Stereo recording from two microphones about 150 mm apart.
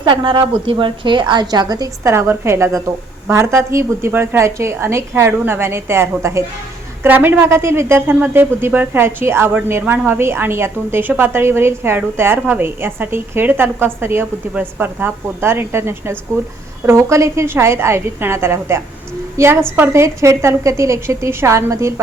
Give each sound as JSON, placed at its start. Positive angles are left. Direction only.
{"t": 0.0, "sound": "a woman's voice", "side_deg": -30}